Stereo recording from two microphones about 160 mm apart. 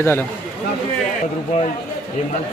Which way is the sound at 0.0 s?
15° left (ahead or behind).